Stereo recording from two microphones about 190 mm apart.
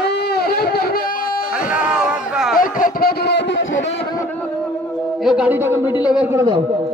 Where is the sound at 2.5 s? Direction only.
45° left (ahead or behind); by 3.7 s 70° left (ahead or behind).